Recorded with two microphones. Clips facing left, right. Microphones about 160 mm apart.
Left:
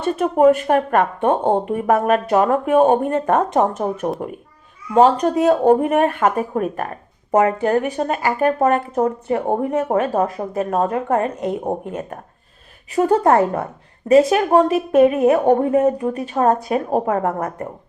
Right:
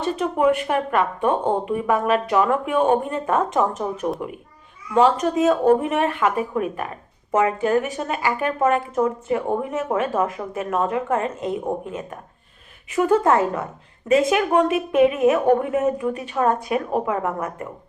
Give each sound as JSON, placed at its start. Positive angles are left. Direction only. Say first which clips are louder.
{"t": 0.0, "sound": "speech", "louder": "left 5 dB", "side_deg": 45}
{"t": 3.5, "sound": "speech", "louder": "left 4 dB", "side_deg": 40}
{"t": 11.2, "sound": "speech", "louder": "left 3 dB", "side_deg": 65}
{"t": 13.4, "sound": "speech", "louder": "left 4 dB", "side_deg": 60}
{"t": 14.1, "sound": "speech", "louder": "left 5 dB", "side_deg": 35}